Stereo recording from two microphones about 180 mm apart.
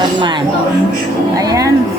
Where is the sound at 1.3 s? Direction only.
20° right (ahead or behind).